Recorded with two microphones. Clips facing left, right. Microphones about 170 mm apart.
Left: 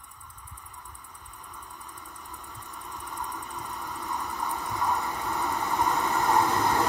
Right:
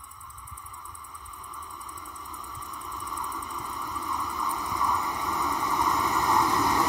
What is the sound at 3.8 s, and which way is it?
Vehicle, 45° left (ahead or behind).